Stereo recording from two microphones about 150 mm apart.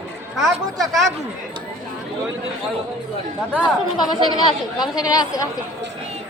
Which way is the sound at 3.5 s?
10° right (ahead or behind).